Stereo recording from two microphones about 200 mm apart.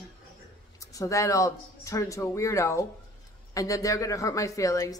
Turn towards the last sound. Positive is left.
turn(degrees=15)  # may be behind; listen again after turning